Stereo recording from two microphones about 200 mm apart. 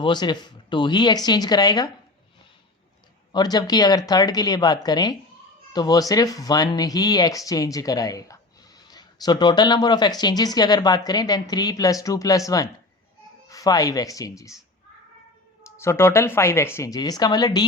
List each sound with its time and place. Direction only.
0.0 s speech: 20° left (ahead or behind)
3.3 s speech: 20° left (ahead or behind)
15.8 s speech: 15° left (ahead or behind)